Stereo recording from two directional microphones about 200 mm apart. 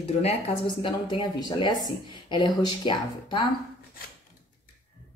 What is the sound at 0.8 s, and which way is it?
Speech, 25° left (ahead or behind).